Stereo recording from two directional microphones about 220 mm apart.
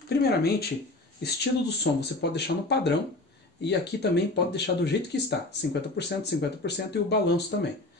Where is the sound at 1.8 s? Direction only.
50° left (ahead or behind).